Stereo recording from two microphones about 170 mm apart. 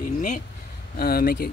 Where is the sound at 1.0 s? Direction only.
60° left (ahead or behind).